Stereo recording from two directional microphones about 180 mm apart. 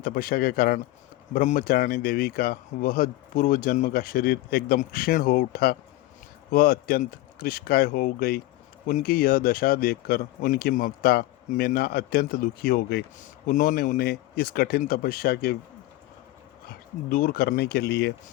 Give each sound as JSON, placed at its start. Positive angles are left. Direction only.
{"t": 0.0, "sound": "speech", "side_deg": 55}
{"t": 16.6, "sound": "speech", "side_deg": 55}